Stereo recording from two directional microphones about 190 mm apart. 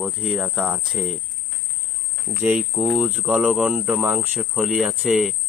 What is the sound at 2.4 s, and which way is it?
Speech, 5° right (ahead or behind).